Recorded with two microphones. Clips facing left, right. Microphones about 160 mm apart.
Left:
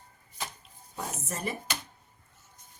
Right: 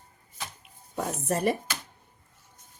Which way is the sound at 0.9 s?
65° right (ahead or behind).